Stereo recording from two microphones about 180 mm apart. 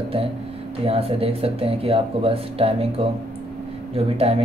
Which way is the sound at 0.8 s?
35° right (ahead or behind).